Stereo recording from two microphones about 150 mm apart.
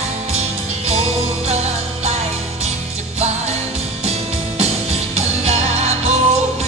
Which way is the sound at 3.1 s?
45° right (ahead or behind).